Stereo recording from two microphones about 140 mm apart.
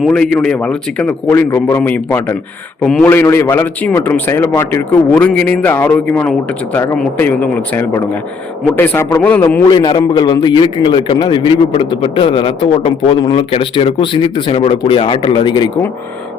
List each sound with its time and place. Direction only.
0.0 s a man's voice: 5° left (ahead or behind)
3.1 s a man's voice: 15° left (ahead or behind)
9.6 s a man's voice: 30° left (ahead or behind)